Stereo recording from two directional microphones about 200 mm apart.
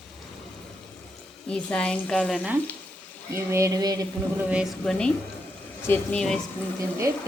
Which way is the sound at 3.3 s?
15° right (ahead or behind).